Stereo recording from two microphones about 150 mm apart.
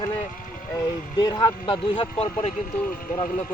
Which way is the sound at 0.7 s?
30° left (ahead or behind).